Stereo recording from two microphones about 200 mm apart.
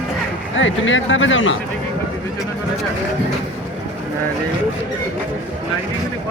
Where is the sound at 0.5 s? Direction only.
70° left (ahead or behind).